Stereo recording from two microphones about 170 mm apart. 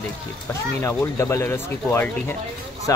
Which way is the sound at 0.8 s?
15° left (ahead or behind).